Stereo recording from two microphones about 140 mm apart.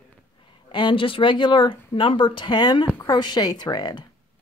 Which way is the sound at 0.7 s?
35° left (ahead or behind).